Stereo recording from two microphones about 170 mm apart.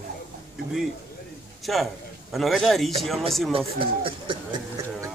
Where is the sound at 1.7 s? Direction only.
Centre (ahead or behind).